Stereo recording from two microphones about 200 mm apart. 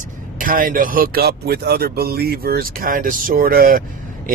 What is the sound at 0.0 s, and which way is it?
Speech, 45° right (ahead or behind).